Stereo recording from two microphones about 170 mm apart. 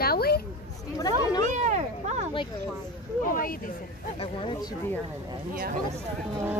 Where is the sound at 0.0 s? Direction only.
65° left (ahead or behind).